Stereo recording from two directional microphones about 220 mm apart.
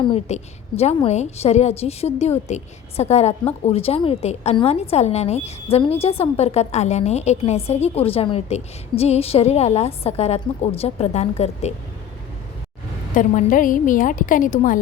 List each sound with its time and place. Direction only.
0.0 s a woman's voice: 25° left (ahead or behind)
13.1 s a woman's voice: 35° left (ahead or behind)